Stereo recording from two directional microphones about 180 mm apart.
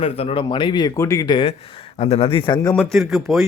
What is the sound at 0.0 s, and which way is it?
Speech, 30° left (ahead or behind).